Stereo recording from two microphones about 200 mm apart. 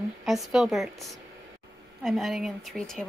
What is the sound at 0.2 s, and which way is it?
Speech, centre (ahead or behind).